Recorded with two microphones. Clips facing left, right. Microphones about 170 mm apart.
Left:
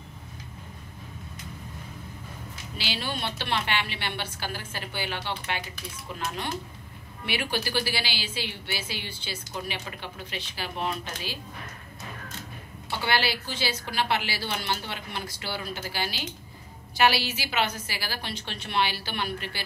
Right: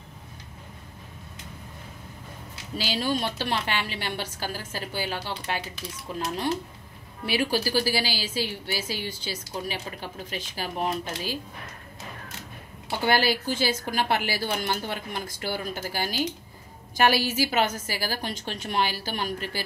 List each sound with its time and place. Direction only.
2.8 s a woman's voice: 40° right (ahead or behind)
13.0 s a woman's voice: 45° right (ahead or behind)